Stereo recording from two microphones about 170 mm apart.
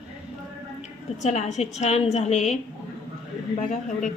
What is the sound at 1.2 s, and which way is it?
A woman's voice, 40° left (ahead or behind).